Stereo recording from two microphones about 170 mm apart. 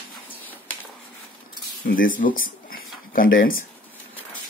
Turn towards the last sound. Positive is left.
turn(degrees=55)  # may be behind; listen again after turning